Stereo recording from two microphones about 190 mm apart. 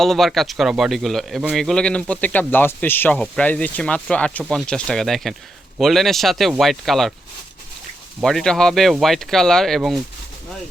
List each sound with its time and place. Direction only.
0.0 s speech: centre (ahead or behind)
8.2 s speech: centre (ahead or behind)